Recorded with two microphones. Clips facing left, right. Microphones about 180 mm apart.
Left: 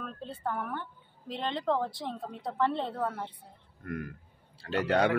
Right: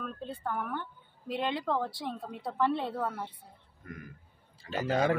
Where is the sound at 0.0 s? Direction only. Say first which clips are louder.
Left 1 dB; 5° right (ahead or behind).